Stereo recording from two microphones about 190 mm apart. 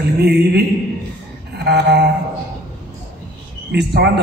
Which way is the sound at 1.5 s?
60° right (ahead or behind).